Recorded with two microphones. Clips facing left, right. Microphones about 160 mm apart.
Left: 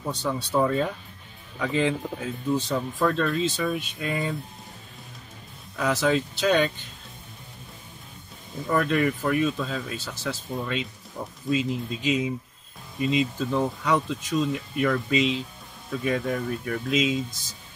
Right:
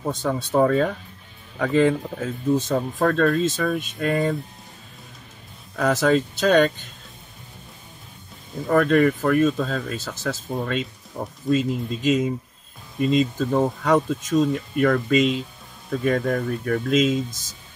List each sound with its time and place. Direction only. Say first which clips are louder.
0.0 s speech: right 4 dB; 50° right (ahead or behind)
5.8 s speech: right 4 dB; 50° right (ahead or behind)
8.6 s speech: right 6 dB; 50° right (ahead or behind)
13.4 s speech: right 4 dB; 50° right (ahead or behind)